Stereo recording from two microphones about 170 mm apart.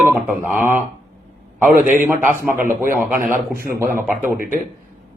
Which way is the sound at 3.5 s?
60° right (ahead or behind).